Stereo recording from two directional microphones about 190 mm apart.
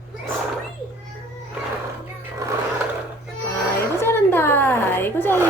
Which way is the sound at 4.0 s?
10° left (ahead or behind).